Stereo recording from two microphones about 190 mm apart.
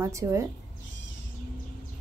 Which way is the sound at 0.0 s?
15° right (ahead or behind).